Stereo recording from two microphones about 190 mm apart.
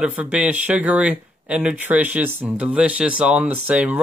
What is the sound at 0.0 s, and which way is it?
Speech, 5° right (ahead or behind).